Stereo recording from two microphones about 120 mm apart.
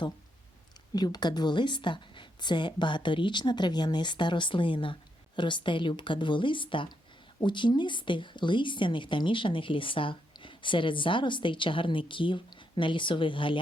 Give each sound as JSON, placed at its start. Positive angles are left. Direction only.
{"t": 0.9, "sound": "a woman's voice", "side_deg": 35}